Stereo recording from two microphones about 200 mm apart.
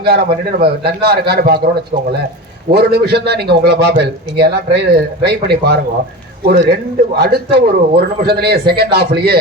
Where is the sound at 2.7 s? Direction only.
55° right (ahead or behind).